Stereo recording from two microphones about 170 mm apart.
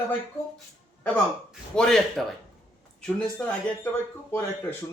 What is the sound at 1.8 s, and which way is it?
Speech, centre (ahead or behind).